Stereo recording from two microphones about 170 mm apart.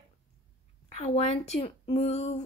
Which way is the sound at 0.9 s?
40° left (ahead or behind).